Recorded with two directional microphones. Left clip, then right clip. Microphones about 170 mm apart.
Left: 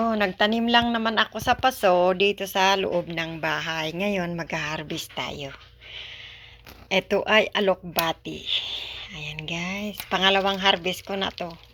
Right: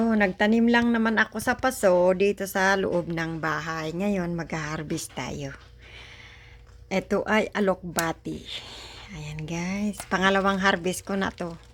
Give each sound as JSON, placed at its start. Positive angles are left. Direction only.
{"t": 0.0, "sound": "a woman's voice", "side_deg": -30}
{"t": 3.4, "sound": "speech", "side_deg": -15}
{"t": 6.9, "sound": "speech", "side_deg": -20}